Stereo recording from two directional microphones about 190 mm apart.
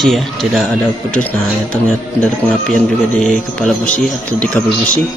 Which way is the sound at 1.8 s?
5° left (ahead or behind).